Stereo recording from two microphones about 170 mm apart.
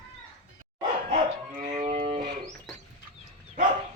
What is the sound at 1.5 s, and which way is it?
Music, 45° right (ahead or behind).